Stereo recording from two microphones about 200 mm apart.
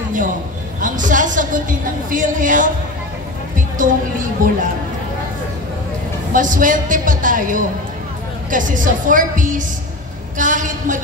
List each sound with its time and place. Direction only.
0.7 s a woman's voice: 40° right (ahead or behind)
3.7 s a woman's voice: 40° right (ahead or behind)
6.3 s a woman's voice: 40° right (ahead or behind)